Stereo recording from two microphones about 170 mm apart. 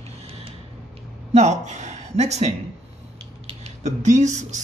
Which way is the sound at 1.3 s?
45° right (ahead or behind).